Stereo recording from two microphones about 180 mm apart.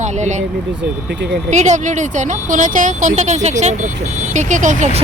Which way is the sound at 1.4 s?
40° right (ahead or behind).